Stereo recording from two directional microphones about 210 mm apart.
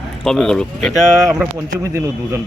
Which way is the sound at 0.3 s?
Centre (ahead or behind).